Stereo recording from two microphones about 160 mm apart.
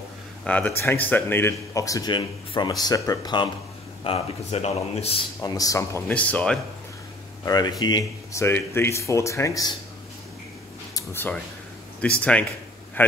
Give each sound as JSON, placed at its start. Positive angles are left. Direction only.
{"t": 0.5, "sound": "speech", "side_deg": 10}
{"t": 4.0, "sound": "speech", "side_deg": 40}
{"t": 5.4, "sound": "speech", "side_deg": 20}
{"t": 7.4, "sound": "speech", "side_deg": 25}
{"t": 11.0, "sound": "speech", "side_deg": 15}